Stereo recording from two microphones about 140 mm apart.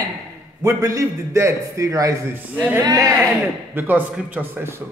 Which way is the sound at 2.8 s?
25° right (ahead or behind).